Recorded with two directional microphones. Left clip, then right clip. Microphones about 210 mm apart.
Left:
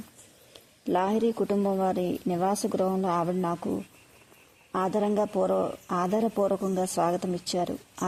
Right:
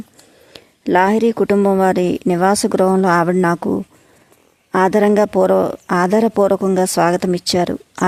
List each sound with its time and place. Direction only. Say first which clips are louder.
0.5 s speech: right 13 dB; 25° right (ahead or behind)